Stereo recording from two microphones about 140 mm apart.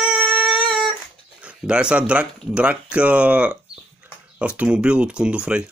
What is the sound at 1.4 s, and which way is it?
Speech, 10° right (ahead or behind).